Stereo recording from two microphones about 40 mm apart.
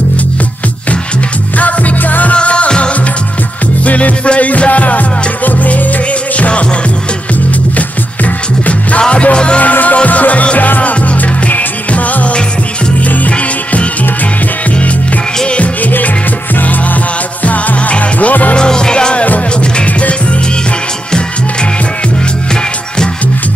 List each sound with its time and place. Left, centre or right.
1.6 s music: left
2.3 s music: left
3.8 s music: left
9.1 s music: left
9.6 s music: left
15.4 s music: left
17.5 s music: left
18.6 s music: centre